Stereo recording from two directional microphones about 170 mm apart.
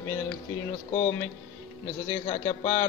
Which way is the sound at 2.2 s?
45° left (ahead or behind).